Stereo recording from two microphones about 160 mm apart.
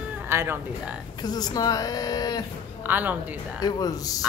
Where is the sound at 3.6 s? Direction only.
25° left (ahead or behind).